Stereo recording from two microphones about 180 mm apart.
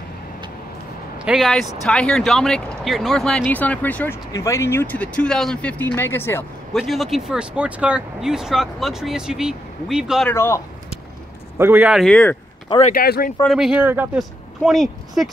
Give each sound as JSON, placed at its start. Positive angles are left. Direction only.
{"t": 1.2, "sound": "speech", "side_deg": -5}
{"t": 6.7, "sound": "speech", "side_deg": 0}
{"t": 10.3, "sound": "speech", "side_deg": 15}
{"t": 11.5, "sound": "speech", "side_deg": -10}
{"t": 12.0, "sound": "speech", "side_deg": 5}
{"t": 12.6, "sound": "speech", "side_deg": 30}
{"t": 12.9, "sound": "speech", "side_deg": 55}
{"t": 13.4, "sound": "speech", "side_deg": 0}